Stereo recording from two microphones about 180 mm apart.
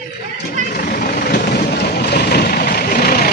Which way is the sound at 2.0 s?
60° left (ahead or behind).